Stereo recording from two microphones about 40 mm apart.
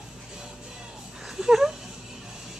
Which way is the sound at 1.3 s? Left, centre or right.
Centre.